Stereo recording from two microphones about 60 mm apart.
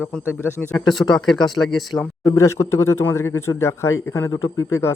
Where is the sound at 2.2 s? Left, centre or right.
Left.